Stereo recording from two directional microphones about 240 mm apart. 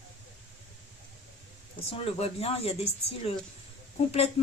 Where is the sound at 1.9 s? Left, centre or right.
Left.